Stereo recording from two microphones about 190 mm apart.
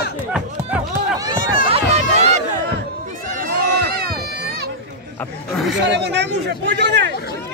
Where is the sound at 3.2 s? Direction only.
45° right (ahead or behind).